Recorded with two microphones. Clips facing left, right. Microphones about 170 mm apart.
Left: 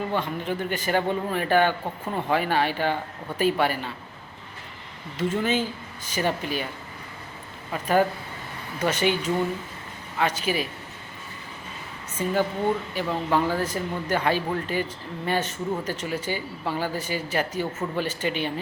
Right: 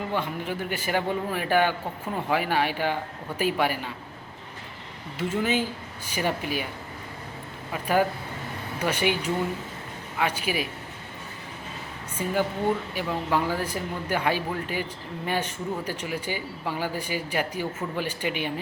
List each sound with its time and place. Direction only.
0.2 s speech: 10° right (ahead or behind)
5.1 s speech: 10° right (ahead or behind)
7.7 s speech: 10° right (ahead or behind)
12.1 s a woman's voice: 10° right (ahead or behind)